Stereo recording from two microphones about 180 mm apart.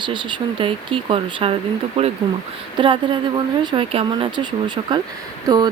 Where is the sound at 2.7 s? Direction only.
25° right (ahead or behind).